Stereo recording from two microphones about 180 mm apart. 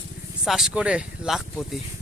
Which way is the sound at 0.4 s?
5° right (ahead or behind).